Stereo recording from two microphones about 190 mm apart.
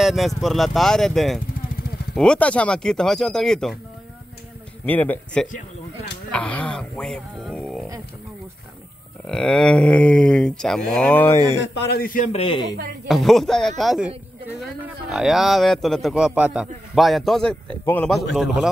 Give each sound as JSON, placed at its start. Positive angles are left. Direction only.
{"t": 0.0, "sound": "speech", "side_deg": 0}
{"t": 4.8, "sound": "speech", "side_deg": 10}
{"t": 9.3, "sound": "speech", "side_deg": 5}
{"t": 11.6, "sound": "a man's voice", "side_deg": 65}
{"t": 12.3, "sound": "speech", "side_deg": 30}
{"t": 13.1, "sound": "speech", "side_deg": 0}